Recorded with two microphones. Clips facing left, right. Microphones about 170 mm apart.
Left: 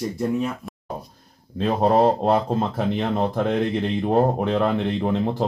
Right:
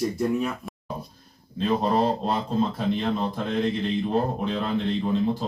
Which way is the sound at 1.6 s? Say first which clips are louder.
Left 5 dB; 60° left (ahead or behind).